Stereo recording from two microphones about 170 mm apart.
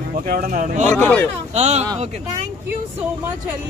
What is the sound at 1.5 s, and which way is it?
Speech, 40° right (ahead or behind).